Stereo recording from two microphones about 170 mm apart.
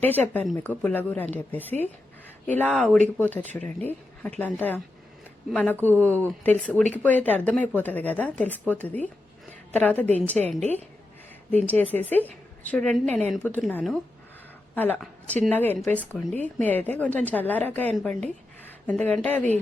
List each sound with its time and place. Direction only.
0.5 s a woman's voice: 10° left (ahead or behind)
5.7 s speech: 15° right (ahead or behind)
6.0 s a woman's voice: 10° left (ahead or behind)